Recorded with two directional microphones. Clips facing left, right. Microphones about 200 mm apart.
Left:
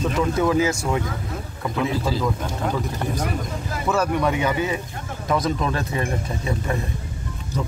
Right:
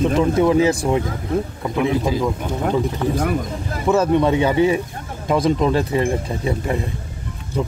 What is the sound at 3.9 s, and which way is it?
Speech, 25° right (ahead or behind).